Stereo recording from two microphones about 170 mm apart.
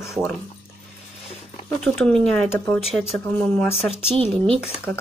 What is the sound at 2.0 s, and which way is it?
Speech, centre (ahead or behind).